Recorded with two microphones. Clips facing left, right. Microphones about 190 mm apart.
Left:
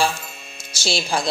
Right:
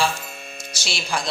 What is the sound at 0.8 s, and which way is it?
Speech, 30° left (ahead or behind).